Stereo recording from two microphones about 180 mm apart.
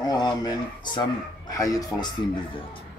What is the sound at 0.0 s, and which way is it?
Speech, 20° left (ahead or behind).